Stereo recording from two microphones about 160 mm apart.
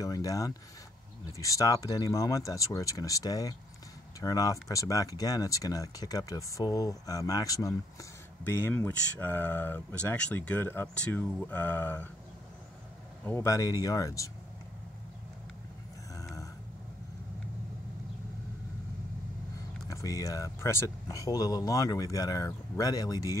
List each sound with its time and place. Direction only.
0.0 s speech: 20° left (ahead or behind)
13.2 s speech: 15° left (ahead or behind)
16.2 s a sound: 20° left (ahead or behind)
19.9 s speech: 20° left (ahead or behind)